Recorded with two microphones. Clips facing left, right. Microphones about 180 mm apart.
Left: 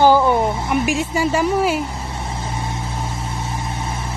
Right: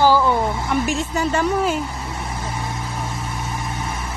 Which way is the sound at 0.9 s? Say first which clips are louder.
Left 2 dB; 10° left (ahead or behind).